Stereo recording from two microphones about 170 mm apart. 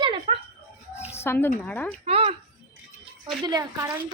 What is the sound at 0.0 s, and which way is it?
Dog, 25° right (ahead or behind).